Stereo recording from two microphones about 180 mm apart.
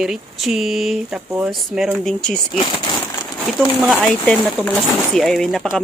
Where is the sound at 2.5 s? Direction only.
30° left (ahead or behind).